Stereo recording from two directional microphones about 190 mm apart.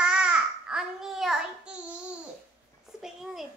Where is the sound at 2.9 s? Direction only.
5° right (ahead or behind).